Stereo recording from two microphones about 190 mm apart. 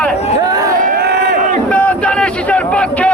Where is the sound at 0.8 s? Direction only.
55° right (ahead or behind).